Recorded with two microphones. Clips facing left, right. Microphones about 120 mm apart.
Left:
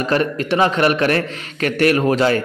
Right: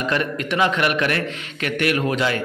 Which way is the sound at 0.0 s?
35° left (ahead or behind).